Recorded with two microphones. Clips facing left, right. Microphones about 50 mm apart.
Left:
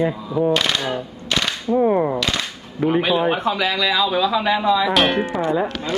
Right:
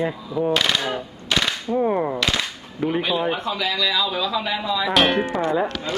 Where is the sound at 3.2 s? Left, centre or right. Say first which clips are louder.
Left 4 dB; left.